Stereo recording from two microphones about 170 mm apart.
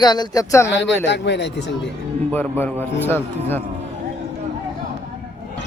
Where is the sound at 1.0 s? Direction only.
90° left.